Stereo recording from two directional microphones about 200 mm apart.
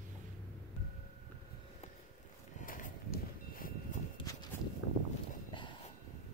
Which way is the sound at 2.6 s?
40° left (ahead or behind).